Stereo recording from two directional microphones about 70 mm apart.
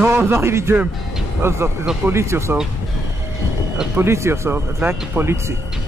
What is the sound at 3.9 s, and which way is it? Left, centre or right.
Speech, right.